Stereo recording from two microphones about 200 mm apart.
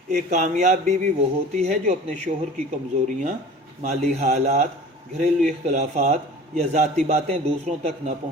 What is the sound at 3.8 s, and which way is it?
A man's voice, 35° right (ahead or behind).